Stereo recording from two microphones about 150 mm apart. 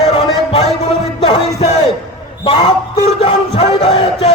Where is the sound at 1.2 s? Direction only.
40° left (ahead or behind).